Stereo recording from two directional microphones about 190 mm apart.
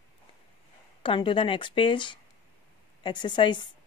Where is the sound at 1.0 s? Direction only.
25° left (ahead or behind).